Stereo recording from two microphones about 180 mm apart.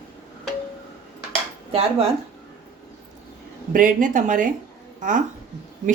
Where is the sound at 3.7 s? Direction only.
45° right (ahead or behind).